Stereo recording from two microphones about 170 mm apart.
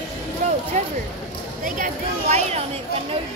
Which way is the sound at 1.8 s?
45° right (ahead or behind).